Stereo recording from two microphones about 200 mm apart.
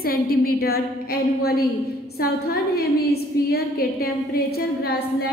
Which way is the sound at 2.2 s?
50° left (ahead or behind).